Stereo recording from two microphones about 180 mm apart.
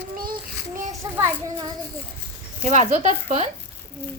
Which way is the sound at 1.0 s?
20° right (ahead or behind).